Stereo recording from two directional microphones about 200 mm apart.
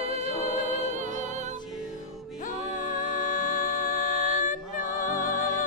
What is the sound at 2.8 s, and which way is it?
Music, 40° left (ahead or behind).